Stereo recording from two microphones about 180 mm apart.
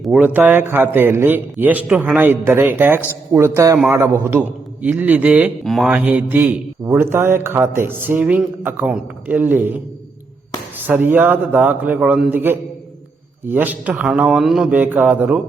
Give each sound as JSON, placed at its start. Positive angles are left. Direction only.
{"t": 0.0, "sound": "a man's voice", "side_deg": -5}
{"t": 10.8, "sound": "a man's voice", "side_deg": -10}